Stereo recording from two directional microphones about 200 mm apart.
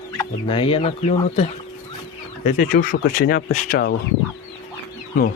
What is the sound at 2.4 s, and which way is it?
Speech, 40° left (ahead or behind).